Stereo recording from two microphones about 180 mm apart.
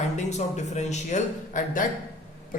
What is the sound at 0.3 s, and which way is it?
A man's voice, 40° left (ahead or behind).